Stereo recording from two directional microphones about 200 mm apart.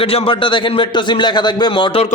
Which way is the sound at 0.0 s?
30° left (ahead or behind).